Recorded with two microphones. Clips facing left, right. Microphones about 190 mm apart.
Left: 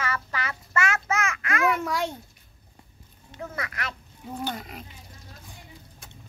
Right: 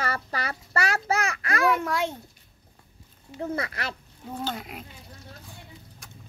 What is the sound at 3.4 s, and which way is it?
Speech, 30° right (ahead or behind).